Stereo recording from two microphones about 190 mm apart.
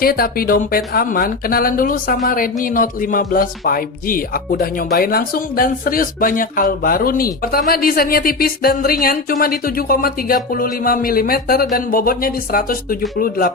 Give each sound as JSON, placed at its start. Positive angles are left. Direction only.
{"t": 0.0, "sound": "speech", "side_deg": 50}